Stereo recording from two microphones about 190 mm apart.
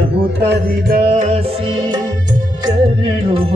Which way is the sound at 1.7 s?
20° right (ahead or behind).